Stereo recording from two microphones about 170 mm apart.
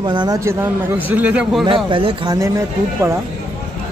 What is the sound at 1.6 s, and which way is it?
Speech, 30° right (ahead or behind).